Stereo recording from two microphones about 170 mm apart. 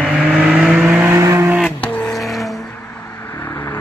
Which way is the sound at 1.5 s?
5° left (ahead or behind).